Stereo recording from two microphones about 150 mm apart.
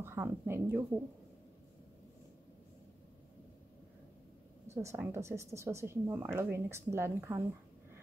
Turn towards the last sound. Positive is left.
turn(degrees=-15)  # may be behind; listen again after turning